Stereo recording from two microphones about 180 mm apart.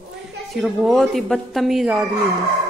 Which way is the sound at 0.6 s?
Centre (ahead or behind).